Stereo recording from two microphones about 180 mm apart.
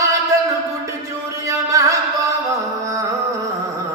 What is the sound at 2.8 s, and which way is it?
Music, 15° right (ahead or behind).